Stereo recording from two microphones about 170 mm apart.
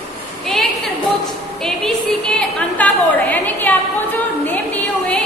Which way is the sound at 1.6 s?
5° left (ahead or behind).